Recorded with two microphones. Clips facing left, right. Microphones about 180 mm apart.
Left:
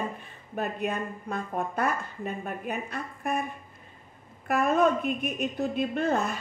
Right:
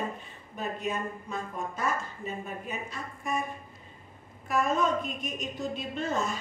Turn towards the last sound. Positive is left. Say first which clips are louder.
# left 4 dB
turn(degrees=60)  # may be behind; listen again after turning